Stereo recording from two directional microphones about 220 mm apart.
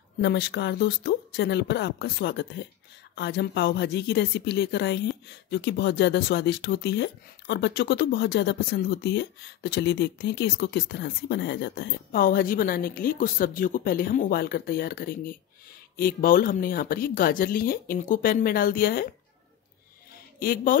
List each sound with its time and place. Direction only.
0.2 s a woman's voice: 50° left (ahead or behind)
20.3 s speech: 40° left (ahead or behind)